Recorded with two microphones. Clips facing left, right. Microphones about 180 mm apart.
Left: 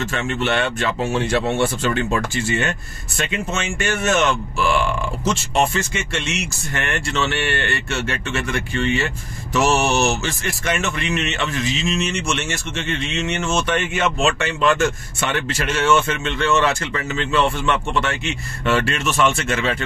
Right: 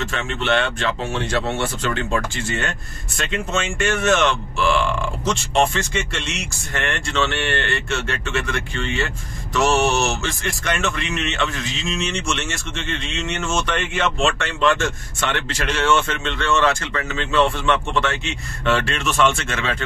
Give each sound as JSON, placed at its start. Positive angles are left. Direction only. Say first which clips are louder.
{"t": 0.1, "sound": "speech", "louder": "right 1 dB", "side_deg": 5}